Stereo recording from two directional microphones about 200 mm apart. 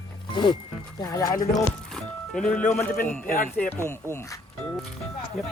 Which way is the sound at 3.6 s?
10° left (ahead or behind).